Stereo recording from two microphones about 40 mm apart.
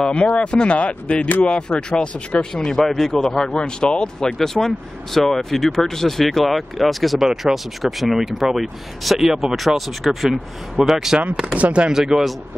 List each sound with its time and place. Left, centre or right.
0.0 s speech: left; by 3.4 s centre
3.4 s speech: left; by 11.1 s centre
11.5 s speech: right
11.9 s speech: centre